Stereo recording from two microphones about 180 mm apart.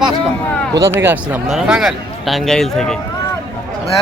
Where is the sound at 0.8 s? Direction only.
10° right (ahead or behind); by 2.9 s 5° left (ahead or behind).